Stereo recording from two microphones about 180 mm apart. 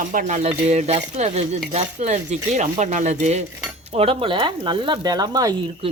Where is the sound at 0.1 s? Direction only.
45° right (ahead or behind); by 5.5 s 20° right (ahead or behind).